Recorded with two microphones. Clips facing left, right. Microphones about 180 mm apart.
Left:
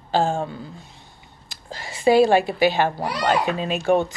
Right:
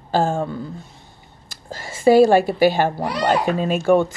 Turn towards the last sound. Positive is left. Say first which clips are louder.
# right 3 dB
turn(degrees=-50)  # may be behind; listen again after turning